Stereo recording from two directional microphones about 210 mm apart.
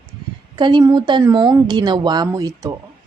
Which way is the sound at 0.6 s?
20° right (ahead or behind).